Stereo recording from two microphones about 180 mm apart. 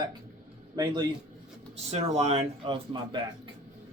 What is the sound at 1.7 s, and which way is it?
Speech, 35° right (ahead or behind).